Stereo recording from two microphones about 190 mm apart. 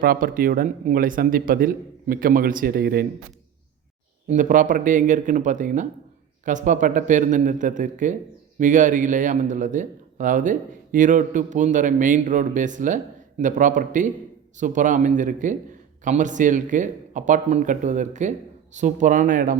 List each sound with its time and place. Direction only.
0.0 s speech: 50° right (ahead or behind)
4.3 s a man's voice: 45° right (ahead or behind)